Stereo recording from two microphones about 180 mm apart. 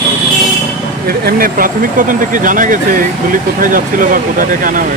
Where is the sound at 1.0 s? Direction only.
55° right (ahead or behind).